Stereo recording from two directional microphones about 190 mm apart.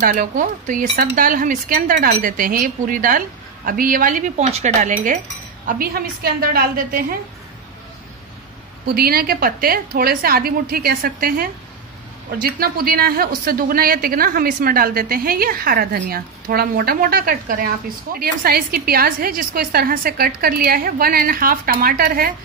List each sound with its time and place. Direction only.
0.0 s a woman's voice: 45° right (ahead or behind)
5.7 s a woman's voice: 50° right (ahead or behind)
8.8 s a woman's voice: 55° right (ahead or behind)